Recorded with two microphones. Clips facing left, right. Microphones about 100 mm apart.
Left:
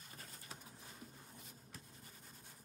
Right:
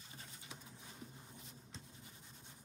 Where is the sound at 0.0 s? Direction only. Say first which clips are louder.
Even; 45° left (ahead or behind).